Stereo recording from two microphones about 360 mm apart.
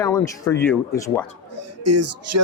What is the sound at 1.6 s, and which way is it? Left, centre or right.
Speech, right.